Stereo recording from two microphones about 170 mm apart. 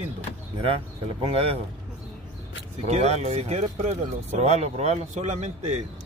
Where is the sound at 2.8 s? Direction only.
40° right (ahead or behind).